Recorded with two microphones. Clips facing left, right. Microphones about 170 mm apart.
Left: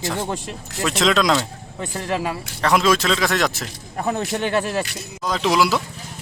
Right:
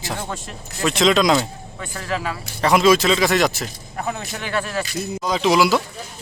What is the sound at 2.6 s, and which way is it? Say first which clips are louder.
Speech: right 3 dB; 5° right (ahead or behind).